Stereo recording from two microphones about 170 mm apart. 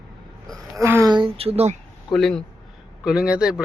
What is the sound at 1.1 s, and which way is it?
Speech, 30° right (ahead or behind).